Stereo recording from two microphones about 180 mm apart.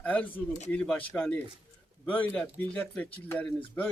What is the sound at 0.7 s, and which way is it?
A man's voice, 5° left (ahead or behind).